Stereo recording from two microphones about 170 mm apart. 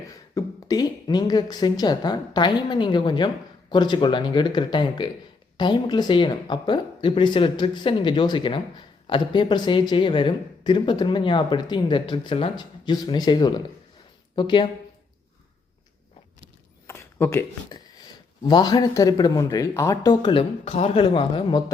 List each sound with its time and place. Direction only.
0.3 s speech: 25° left (ahead or behind)
16.8 s a sound: 15° left (ahead or behind)
18.4 s speech: 25° left (ahead or behind)